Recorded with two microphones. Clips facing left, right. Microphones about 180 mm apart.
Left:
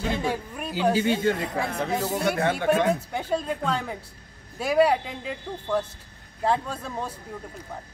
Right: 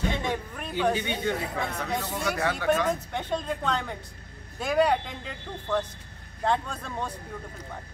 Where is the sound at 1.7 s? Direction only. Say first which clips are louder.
Left 4 dB; 30° left (ahead or behind).